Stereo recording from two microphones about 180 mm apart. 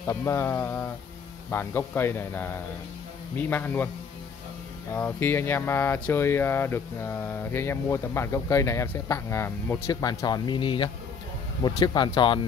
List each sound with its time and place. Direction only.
0.0 s speech: 15° left (ahead or behind)
4.9 s speech: 10° left (ahead or behind)